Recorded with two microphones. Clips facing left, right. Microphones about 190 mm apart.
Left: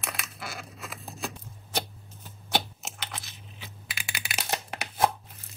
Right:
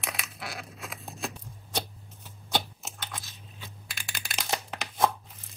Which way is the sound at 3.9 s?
5° left (ahead or behind).